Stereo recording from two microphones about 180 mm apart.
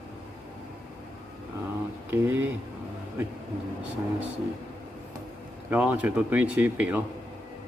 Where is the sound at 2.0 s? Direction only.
10° right (ahead or behind).